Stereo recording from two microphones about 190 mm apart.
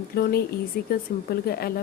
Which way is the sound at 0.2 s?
55° left (ahead or behind).